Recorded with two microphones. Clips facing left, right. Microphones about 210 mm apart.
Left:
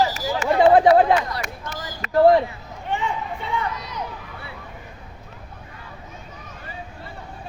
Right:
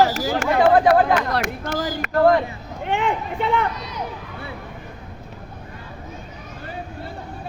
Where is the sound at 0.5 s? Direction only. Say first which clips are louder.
Left 2 dB; 25° left (ahead or behind).